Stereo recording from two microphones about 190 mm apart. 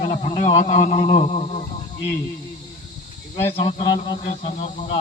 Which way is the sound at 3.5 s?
30° left (ahead or behind).